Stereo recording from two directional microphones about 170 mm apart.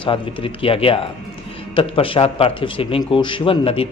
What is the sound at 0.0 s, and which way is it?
A man's voice, 30° left (ahead or behind).